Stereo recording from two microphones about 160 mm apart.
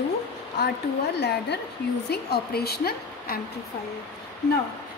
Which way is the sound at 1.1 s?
90° left.